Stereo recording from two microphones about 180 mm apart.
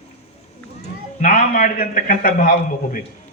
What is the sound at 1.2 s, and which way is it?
A man's voice, 50° left (ahead or behind).